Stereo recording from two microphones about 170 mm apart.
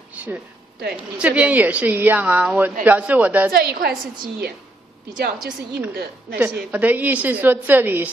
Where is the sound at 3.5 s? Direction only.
65° right (ahead or behind).